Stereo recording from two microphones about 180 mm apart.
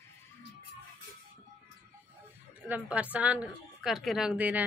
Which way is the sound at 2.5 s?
10° right (ahead or behind).